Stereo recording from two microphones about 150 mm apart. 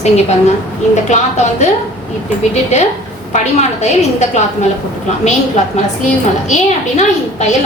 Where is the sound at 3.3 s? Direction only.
50° left (ahead or behind).